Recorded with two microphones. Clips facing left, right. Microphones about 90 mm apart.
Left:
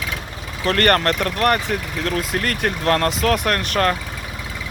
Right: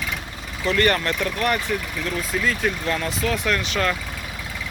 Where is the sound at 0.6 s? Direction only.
60° left (ahead or behind).